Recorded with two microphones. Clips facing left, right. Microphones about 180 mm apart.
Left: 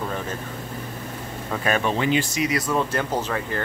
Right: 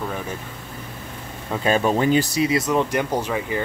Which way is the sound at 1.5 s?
25° right (ahead or behind).